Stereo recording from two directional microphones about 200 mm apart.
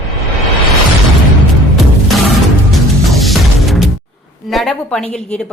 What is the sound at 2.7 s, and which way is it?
Music, centre (ahead or behind).